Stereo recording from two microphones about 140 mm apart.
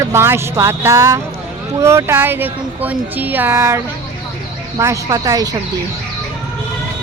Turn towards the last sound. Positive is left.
turn(degrees=-25)  # may be behind; listen again after turning